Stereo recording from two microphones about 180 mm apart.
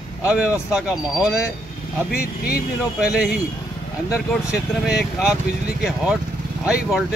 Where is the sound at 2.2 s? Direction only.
55° left (ahead or behind).